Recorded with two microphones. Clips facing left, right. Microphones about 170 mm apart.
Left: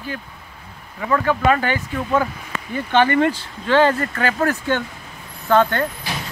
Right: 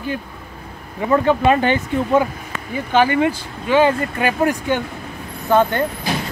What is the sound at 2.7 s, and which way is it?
Speech, 10° right (ahead or behind).